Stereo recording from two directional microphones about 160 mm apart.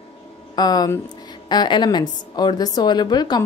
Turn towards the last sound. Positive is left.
turn(degrees=25)  # may be behind; listen again after turning